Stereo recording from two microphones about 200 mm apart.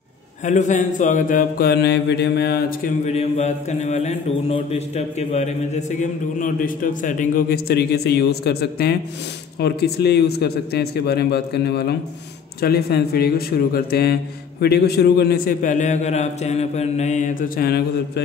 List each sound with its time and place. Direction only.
0.5 s mantra: 35° left (ahead or behind)
3.1 s mantra: 35° left (ahead or behind); by 18.2 s 50° left (ahead or behind)